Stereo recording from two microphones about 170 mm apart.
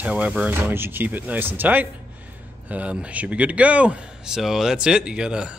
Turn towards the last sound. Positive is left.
turn(degrees=-5)  # may be behind; listen again after turning